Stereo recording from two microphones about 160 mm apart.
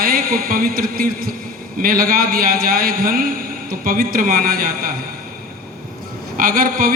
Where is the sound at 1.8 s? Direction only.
60° right (ahead or behind).